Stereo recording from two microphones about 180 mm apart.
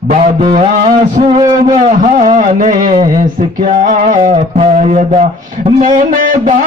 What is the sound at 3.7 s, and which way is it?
Music, 45° right (ahead or behind).